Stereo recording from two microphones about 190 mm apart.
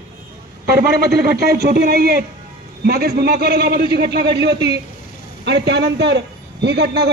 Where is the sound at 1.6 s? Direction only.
55° right (ahead or behind).